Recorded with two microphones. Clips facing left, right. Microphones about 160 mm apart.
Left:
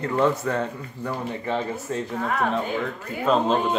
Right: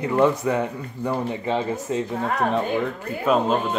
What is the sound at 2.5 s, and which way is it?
Speech, 10° right (ahead or behind).